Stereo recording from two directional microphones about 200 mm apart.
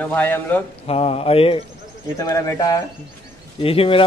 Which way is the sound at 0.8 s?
30° left (ahead or behind).